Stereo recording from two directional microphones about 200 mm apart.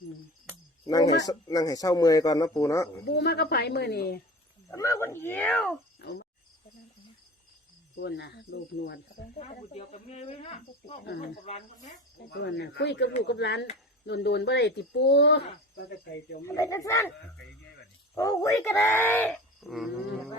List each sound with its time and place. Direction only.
0.9 s speech: 15° left (ahead or behind)
3.1 s speech: 55° left (ahead or behind)
4.7 s speech: 15° left (ahead or behind)
6.0 s cricket: 50° left (ahead or behind)
7.9 s speech: 60° left (ahead or behind)
9.7 s speech: 35° left (ahead or behind)
12.3 s speech: 60° left (ahead or behind)
16.4 s speech: 15° left (ahead or behind)
18.1 s speech: 15° left (ahead or behind); by 19.9 s centre (ahead or behind)